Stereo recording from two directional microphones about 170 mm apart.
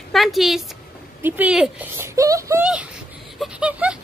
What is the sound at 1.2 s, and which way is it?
Speech, 10° right (ahead or behind).